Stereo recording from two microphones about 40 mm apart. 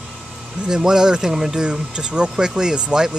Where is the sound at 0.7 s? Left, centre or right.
Centre.